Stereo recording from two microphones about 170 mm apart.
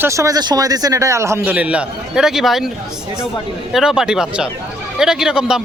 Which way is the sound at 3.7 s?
5° right (ahead or behind).